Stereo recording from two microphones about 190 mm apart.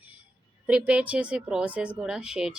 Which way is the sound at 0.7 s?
5° right (ahead or behind).